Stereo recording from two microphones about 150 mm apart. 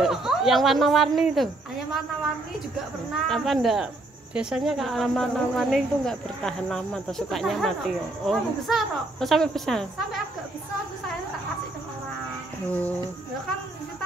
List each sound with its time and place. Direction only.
0.0 s speech: centre (ahead or behind)
3.3 s speech: centre (ahead or behind)
12.6 s speech: 10° left (ahead or behind)